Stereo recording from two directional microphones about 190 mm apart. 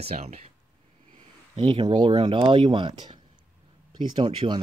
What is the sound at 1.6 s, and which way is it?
Speech, 25° right (ahead or behind).